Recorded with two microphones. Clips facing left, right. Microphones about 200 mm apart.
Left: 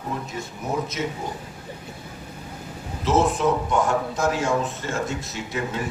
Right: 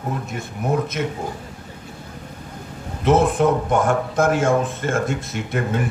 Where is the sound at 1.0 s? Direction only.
55° right (ahead or behind).